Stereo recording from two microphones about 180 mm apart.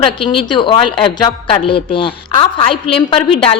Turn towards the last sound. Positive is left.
turn(degrees=30)  # may be behind; listen again after turning